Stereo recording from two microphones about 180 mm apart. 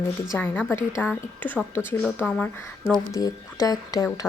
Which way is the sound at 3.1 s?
20° left (ahead or behind).